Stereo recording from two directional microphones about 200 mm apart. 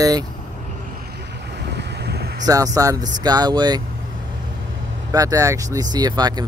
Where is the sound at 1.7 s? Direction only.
55° right (ahead or behind).